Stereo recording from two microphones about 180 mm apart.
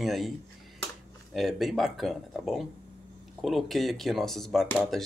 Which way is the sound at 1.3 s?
Centre (ahead or behind).